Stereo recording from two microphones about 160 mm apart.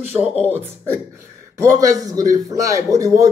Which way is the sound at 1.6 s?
20° right (ahead or behind).